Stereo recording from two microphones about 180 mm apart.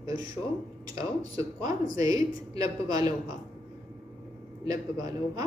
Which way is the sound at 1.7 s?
20° right (ahead or behind).